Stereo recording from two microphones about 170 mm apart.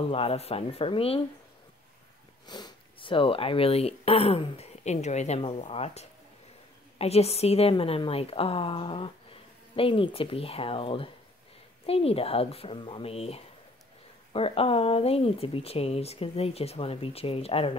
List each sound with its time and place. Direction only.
0.1 s a woman's voice: 35° left (ahead or behind)
2.4 s a woman's voice: 25° left (ahead or behind)